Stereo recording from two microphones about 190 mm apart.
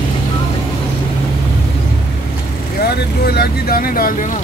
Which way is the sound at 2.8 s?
55° left (ahead or behind).